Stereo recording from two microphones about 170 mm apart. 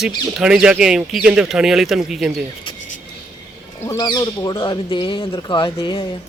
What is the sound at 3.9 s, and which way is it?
Speech, 25° left (ahead or behind).